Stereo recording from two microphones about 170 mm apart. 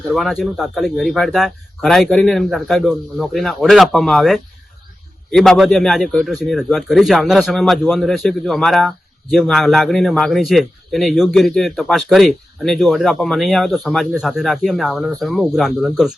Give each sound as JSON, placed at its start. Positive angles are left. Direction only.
{"t": 0.1, "sound": "a man's voice", "side_deg": 0}